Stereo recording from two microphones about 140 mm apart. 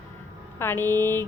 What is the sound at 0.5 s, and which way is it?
Speech, 15° left (ahead or behind).